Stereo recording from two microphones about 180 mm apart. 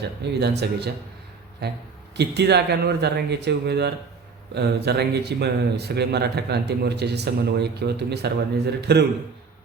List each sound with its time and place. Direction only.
0.2 s speech: 65° right (ahead or behind)
2.1 s speech: 70° right (ahead or behind)